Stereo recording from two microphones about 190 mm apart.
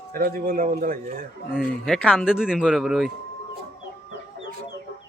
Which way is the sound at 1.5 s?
Centre (ahead or behind).